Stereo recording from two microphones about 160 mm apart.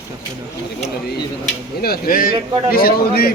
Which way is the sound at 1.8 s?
70° left (ahead or behind).